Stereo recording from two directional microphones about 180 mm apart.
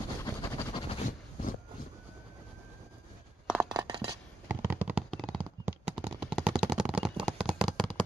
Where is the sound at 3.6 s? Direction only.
25° right (ahead or behind).